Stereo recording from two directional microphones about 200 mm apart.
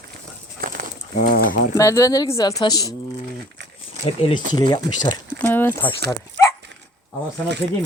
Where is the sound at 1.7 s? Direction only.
15° left (ahead or behind).